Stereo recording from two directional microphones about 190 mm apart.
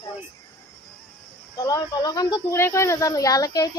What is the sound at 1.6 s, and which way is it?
Speech, 20° left (ahead or behind).